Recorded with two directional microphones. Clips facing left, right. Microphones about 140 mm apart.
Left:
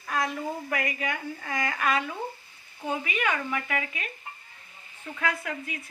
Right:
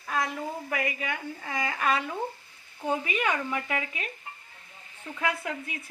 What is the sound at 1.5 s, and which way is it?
Speech, 25° right (ahead or behind).